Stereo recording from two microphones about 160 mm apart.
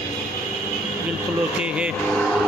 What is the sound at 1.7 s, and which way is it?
Speech, 5° right (ahead or behind).